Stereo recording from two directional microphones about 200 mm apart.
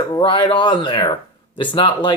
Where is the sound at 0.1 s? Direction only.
25° left (ahead or behind).